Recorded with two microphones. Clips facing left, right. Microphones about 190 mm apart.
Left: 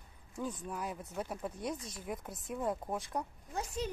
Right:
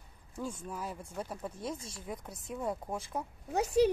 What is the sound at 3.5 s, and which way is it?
Speech, 70° right (ahead or behind).